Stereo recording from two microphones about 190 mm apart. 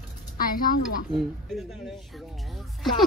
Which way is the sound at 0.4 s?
50° left (ahead or behind).